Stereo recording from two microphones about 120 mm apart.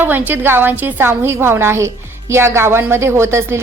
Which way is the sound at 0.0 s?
15° right (ahead or behind).